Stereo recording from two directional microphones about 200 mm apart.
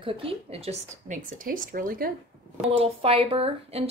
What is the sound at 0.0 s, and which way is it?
Speech, 30° right (ahead or behind).